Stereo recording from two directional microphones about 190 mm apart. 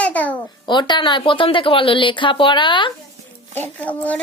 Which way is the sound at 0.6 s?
25° left (ahead or behind).